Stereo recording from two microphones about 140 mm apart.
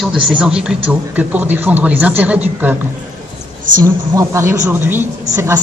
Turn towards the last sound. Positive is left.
turn(degrees=-15)  # may be behind; listen again after turning